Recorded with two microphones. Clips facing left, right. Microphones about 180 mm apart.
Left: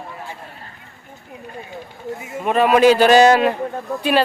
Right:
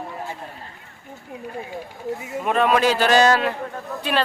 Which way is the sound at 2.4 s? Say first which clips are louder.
Left 6 dB; 5° left (ahead or behind).